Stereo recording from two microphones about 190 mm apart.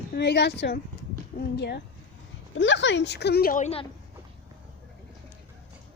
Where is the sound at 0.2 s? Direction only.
65° left (ahead or behind).